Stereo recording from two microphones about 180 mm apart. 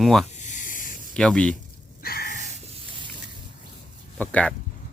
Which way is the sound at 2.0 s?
55° left (ahead or behind).